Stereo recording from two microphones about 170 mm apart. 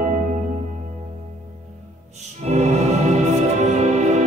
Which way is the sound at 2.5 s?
40° right (ahead or behind).